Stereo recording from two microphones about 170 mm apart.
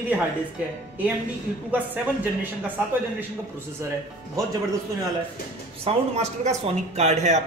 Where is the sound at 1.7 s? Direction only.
10° right (ahead or behind).